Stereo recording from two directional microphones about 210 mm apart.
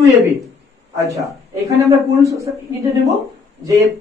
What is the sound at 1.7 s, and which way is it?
Speech, 15° right (ahead or behind).